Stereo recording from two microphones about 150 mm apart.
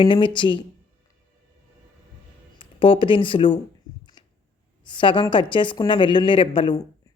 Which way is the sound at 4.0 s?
30° left (ahead or behind).